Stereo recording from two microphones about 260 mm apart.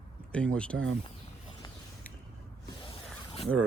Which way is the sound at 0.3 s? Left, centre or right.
Centre.